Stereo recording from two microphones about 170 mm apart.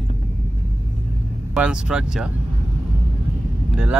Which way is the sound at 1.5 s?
5° right (ahead or behind).